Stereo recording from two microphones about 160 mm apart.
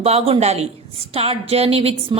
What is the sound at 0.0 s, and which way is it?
A woman's voice, 40° right (ahead or behind).